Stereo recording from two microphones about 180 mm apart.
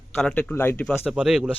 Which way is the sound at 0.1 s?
5° left (ahead or behind).